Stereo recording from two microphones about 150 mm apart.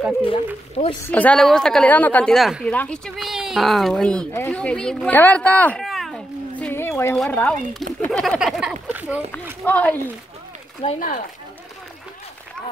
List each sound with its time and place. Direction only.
0.2 s speech: 35° left (ahead or behind)
1.1 s speech: 10° left (ahead or behind)
3.2 s speech: 5° right (ahead or behind)
6.6 s a sound: 15° left (ahead or behind)
7.2 s speech: 10° left (ahead or behind); by 9.2 s 5° right (ahead or behind)
9.7 s speech: 10° left (ahead or behind)
10.8 s speech: 40° left (ahead or behind)